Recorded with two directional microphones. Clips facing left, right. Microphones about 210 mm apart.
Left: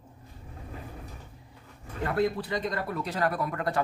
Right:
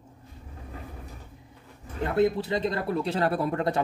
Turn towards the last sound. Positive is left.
turn(degrees=-25)  # may be behind; listen again after turning